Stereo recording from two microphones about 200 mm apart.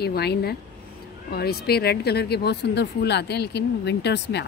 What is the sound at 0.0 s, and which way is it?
Speech, 55° left (ahead or behind).